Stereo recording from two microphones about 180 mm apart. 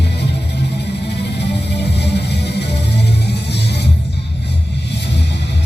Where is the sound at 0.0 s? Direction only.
70° left (ahead or behind).